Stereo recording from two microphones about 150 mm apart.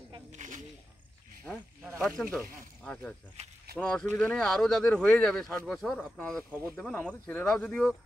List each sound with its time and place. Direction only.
0.3 s speech: 55° right (ahead or behind)
1.4 s a sound: centre (ahead or behind)
2.0 s speech: centre (ahead or behind)
2.4 s speech: 70° right (ahead or behind)
2.8 s speech: 5° left (ahead or behind)
3.4 s speech: 50° right (ahead or behind)
3.7 s speech: 5° left (ahead or behind)